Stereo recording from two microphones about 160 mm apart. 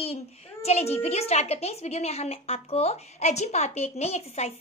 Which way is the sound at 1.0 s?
40° left (ahead or behind).